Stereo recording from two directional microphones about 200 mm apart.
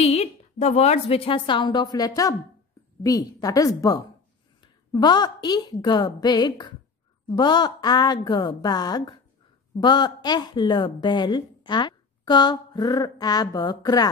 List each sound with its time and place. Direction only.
0.0 s a woman's voice: 30° left (ahead or behind)